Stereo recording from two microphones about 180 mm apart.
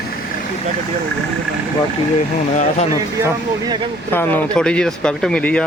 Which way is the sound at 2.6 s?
35° left (ahead or behind).